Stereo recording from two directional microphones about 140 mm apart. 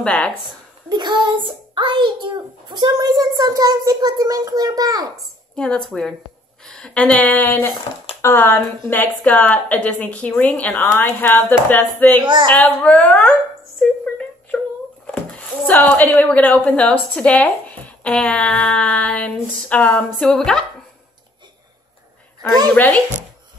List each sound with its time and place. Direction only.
0.0 s speech: 10° left (ahead or behind)
0.8 s a child's voice: 30° right (ahead or behind)
5.6 s speech: 5° left (ahead or behind)
12.2 s speech: 35° right (ahead or behind)
12.5 s a woman's voice: 10° left (ahead or behind)
22.8 s speech: 10° left (ahead or behind)